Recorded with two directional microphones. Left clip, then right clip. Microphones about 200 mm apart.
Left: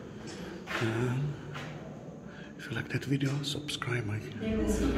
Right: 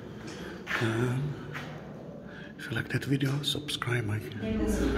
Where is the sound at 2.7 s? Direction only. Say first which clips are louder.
Right 3 dB; 10° right (ahead or behind).